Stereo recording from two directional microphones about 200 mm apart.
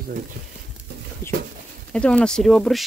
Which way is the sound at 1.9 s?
5° left (ahead or behind).